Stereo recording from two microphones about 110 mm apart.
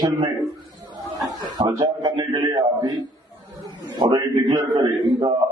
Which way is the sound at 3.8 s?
40° right (ahead or behind).